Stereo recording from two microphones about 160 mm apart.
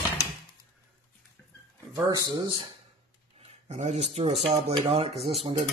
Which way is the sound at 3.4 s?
40° right (ahead or behind).